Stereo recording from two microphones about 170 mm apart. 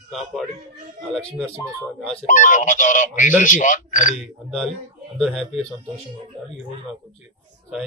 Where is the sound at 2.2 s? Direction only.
45° left (ahead or behind).